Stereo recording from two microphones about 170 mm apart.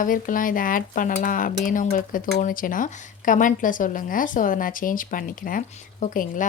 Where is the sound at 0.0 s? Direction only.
50° left (ahead or behind).